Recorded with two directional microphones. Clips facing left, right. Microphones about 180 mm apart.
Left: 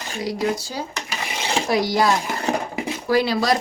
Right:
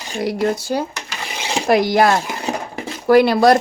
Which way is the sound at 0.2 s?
60° right (ahead or behind).